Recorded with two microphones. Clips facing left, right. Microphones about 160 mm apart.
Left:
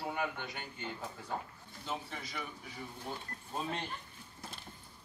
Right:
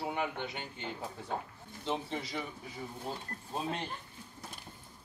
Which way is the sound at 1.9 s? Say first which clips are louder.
Right 6 dB; 25° right (ahead or behind).